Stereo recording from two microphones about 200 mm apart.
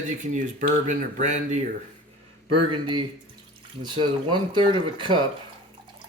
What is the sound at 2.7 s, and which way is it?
Speech, 25° right (ahead or behind).